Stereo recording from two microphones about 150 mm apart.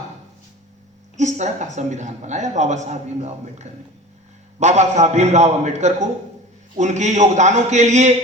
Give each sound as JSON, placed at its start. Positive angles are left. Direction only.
{"t": 1.1, "sound": "speech", "side_deg": -50}